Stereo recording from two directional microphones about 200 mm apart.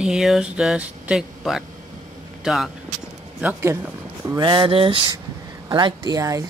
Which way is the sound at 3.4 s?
15° right (ahead or behind).